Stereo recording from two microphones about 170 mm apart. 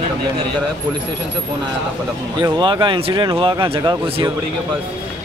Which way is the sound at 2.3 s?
25° right (ahead or behind).